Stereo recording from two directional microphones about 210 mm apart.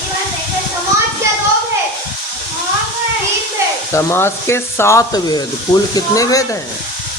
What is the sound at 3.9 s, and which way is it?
Frying, 10° left (ahead or behind).